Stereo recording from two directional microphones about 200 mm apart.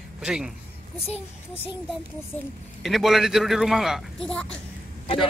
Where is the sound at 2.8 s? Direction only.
Centre (ahead or behind).